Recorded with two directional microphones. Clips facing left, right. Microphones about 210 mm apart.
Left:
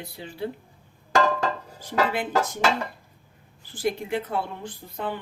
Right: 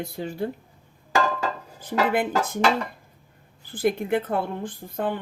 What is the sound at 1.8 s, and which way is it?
Speech, 55° right (ahead or behind).